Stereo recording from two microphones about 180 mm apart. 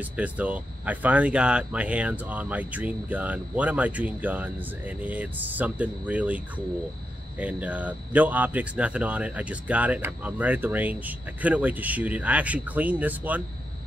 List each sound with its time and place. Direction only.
0.0 s speech: 5° right (ahead or behind)